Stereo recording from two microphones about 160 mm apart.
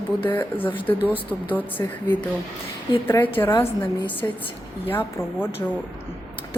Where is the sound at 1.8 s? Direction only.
20° left (ahead or behind).